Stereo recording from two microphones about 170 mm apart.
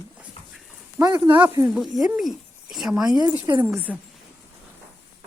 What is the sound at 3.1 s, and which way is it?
Speech, 25° right (ahead or behind).